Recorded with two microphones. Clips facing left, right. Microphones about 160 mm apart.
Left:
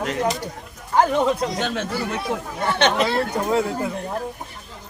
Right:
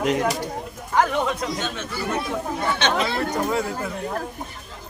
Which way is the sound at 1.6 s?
75° left (ahead or behind).